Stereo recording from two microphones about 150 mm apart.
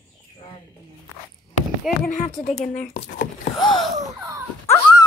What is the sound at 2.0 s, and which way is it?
Speech, 55° left (ahead or behind).